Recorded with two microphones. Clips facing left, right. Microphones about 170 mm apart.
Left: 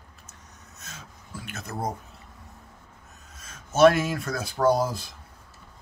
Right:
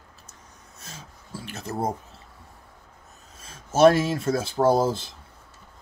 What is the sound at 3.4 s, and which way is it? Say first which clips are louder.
Speech: even; 30° right (ahead or behind).